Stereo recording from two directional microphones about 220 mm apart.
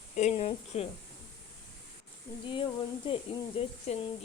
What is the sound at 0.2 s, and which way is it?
Speech, 30° left (ahead or behind).